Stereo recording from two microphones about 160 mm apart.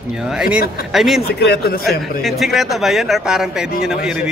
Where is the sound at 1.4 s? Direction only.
90° left.